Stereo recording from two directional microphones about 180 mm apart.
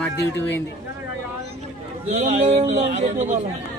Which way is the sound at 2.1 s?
35° right (ahead or behind).